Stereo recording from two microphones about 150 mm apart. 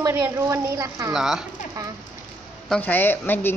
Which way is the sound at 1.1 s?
5° right (ahead or behind).